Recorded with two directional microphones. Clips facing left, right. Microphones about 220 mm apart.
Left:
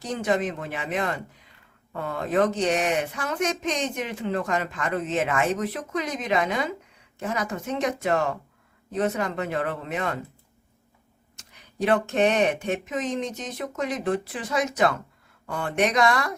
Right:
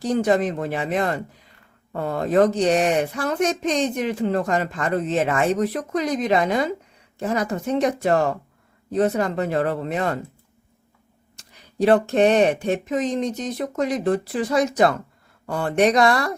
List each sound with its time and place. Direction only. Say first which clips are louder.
0.0 s speech: right 6 dB; 35° right (ahead or behind)
11.3 s speech: right 6 dB; 35° right (ahead or behind)